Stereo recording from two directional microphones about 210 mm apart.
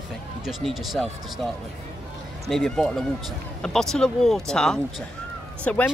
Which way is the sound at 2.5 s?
Centre (ahead or behind).